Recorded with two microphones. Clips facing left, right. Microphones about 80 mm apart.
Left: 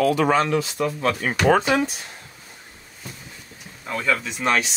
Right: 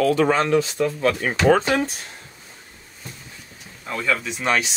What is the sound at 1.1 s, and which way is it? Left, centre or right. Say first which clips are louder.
Speech: even; left.